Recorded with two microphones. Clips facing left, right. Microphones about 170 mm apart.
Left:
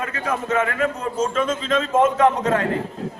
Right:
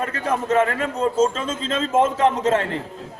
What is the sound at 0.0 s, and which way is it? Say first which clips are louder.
A man's voice: right 2 dB; 35° right (ahead or behind).